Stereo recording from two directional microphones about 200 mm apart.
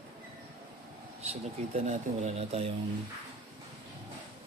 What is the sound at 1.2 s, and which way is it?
Speech, 30° right (ahead or behind).